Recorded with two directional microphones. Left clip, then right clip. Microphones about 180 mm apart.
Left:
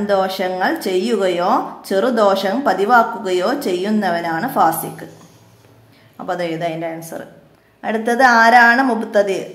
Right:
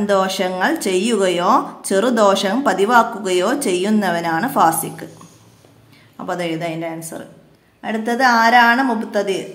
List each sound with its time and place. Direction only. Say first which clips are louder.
0.0 s a woman's voice: even; 20° right (ahead or behind)
6.1 s a woman's voice: left 1 dB; 15° right (ahead or behind)